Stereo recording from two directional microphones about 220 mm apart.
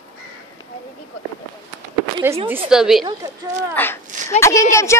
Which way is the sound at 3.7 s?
10° left (ahead or behind).